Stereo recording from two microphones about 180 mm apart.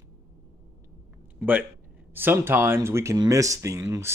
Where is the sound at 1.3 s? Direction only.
10° right (ahead or behind).